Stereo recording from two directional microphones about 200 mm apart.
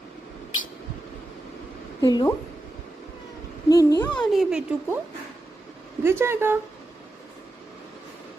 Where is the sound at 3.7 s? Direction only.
15° left (ahead or behind).